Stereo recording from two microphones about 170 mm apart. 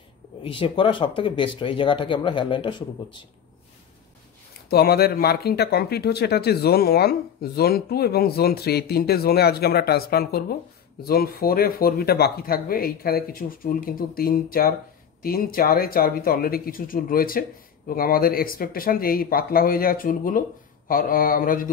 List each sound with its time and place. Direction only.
0.4 s speech: 30° left (ahead or behind)
4.6 s speech: 65° left (ahead or behind)